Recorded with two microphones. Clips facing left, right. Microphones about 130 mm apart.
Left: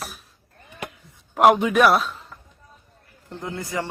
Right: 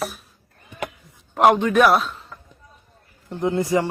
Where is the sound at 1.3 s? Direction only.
Centre (ahead or behind).